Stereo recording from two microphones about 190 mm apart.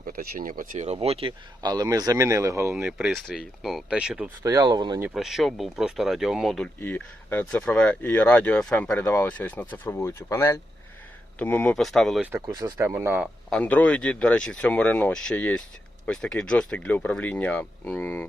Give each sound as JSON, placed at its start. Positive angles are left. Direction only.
{"t": 0.0, "sound": "speech", "side_deg": -50}
{"t": 2.7, "sound": "speech", "side_deg": -5}
{"t": 4.4, "sound": "speech", "side_deg": -20}
{"t": 5.0, "sound": "speech", "side_deg": 0}
{"t": 12.3, "sound": "speech", "side_deg": -20}
{"t": 13.5, "sound": "speech", "side_deg": 5}